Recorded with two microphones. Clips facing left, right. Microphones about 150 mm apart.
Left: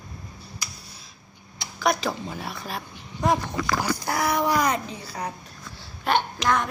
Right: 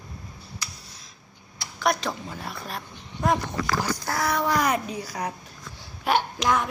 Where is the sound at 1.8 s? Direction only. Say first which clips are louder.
Left 1 dB; centre (ahead or behind).